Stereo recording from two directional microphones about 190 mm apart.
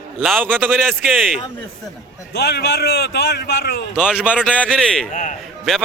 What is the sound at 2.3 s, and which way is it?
A man's voice, 60° left (ahead or behind).